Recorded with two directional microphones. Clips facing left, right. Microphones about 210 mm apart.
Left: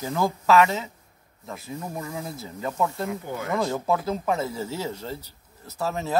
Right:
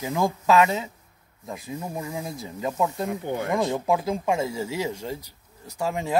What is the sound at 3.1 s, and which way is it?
Speech, 30° right (ahead or behind).